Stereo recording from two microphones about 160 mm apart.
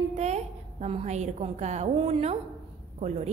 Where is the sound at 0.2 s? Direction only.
45° right (ahead or behind).